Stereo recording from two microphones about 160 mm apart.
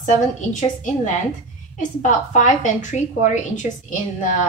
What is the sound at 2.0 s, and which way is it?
A woman's voice, 50° left (ahead or behind).